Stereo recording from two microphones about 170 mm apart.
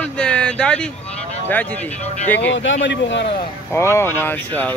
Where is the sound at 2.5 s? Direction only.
90° left.